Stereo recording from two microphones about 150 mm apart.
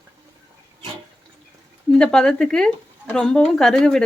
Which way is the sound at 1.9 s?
5° left (ahead or behind).